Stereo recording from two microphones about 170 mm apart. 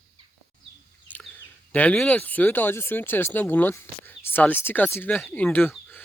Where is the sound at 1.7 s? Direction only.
10° left (ahead or behind).